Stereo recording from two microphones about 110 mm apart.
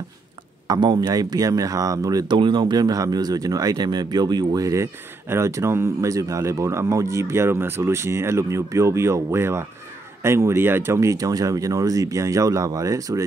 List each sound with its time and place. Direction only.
0.7 s speech: 40° right (ahead or behind)